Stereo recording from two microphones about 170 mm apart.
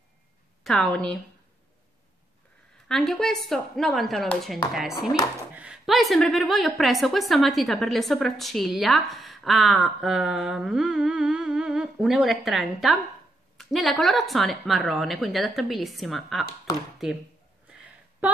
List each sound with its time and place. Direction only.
0.7 s a woman's voice: 5° left (ahead or behind)
2.9 s a woman's voice: 5° left (ahead or behind)
16.7 s speech: 20° left (ahead or behind)
18.2 s speech: 10° right (ahead or behind)